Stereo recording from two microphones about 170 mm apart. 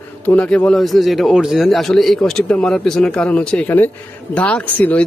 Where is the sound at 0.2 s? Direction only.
10° left (ahead or behind).